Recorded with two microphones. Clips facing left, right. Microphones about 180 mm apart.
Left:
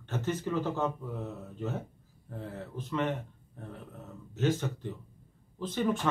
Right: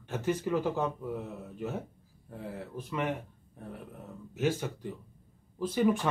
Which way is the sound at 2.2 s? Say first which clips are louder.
Even; 10° right (ahead or behind).